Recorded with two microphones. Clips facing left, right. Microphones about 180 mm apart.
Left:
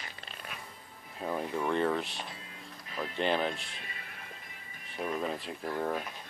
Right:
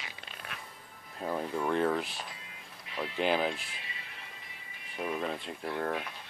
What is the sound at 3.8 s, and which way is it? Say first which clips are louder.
Music: left 1 dB; 50° left (ahead or behind).